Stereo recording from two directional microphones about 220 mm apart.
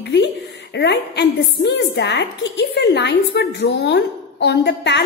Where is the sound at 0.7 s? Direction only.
50° left (ahead or behind).